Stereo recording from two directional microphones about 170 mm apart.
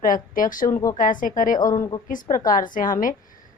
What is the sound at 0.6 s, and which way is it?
Speech, 20° left (ahead or behind).